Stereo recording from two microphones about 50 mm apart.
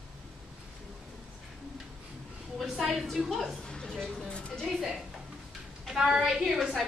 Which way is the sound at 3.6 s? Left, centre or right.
Centre.